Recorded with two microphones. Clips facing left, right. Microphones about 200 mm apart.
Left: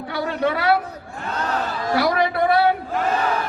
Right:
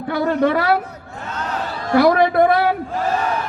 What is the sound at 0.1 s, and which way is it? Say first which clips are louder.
Speech: right 6 dB; 50° right (ahead or behind).